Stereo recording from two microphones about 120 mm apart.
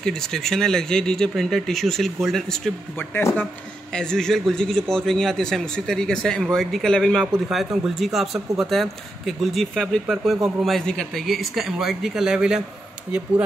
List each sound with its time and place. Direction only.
0.0 s a man's voice: 5° left (ahead or behind)
3.0 s speech: 15° left (ahead or behind)
3.9 s a man's voice: 5° left (ahead or behind)